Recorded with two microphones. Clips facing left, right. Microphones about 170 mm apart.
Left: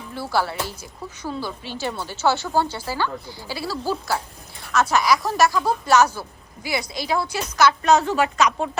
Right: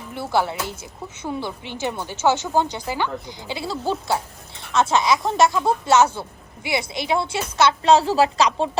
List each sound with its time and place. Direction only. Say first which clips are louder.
0.1 s a woman's voice: right 2 dB; 20° right (ahead or behind)